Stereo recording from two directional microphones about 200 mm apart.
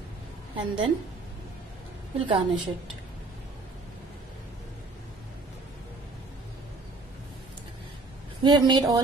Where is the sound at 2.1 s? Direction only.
25° right (ahead or behind).